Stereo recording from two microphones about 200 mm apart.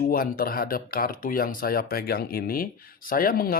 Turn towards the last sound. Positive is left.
turn(degrees=45)  # may be behind; listen again after turning